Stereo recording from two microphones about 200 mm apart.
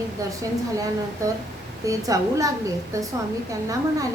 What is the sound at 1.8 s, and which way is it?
A woman's voice, 15° right (ahead or behind).